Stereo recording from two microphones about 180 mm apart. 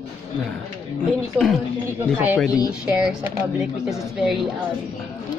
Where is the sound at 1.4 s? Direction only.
10° right (ahead or behind).